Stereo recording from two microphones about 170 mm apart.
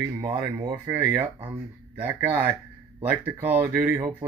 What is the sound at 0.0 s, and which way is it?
Speech, 20° right (ahead or behind).